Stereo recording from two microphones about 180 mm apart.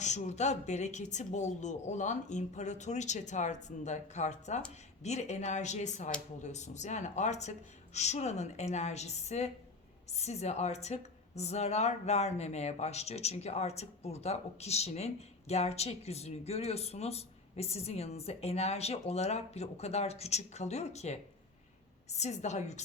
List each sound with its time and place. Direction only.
0.0 s a woman's voice: 40° left (ahead or behind)